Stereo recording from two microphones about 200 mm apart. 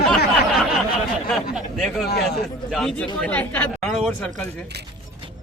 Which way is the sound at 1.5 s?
Centre (ahead or behind).